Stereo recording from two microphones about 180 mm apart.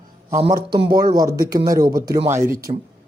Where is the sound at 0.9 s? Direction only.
20° right (ahead or behind).